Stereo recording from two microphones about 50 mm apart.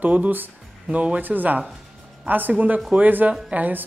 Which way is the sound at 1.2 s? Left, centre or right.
Right.